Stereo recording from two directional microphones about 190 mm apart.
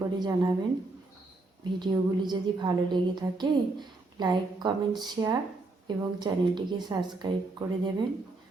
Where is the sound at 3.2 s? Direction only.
20° right (ahead or behind).